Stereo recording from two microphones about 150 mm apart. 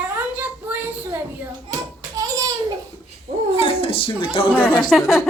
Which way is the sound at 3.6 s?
35° left (ahead or behind).